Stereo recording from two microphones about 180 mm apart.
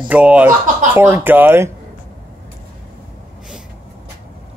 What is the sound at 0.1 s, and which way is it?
Speech, 5° right (ahead or behind).